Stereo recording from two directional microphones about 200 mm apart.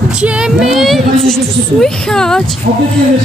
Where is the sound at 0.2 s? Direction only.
Centre (ahead or behind).